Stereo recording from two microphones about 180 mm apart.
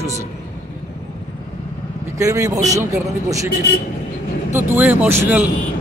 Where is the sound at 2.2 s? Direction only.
15° right (ahead or behind).